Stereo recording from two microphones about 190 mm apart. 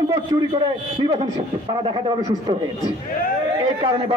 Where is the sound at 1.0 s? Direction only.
30° right (ahead or behind).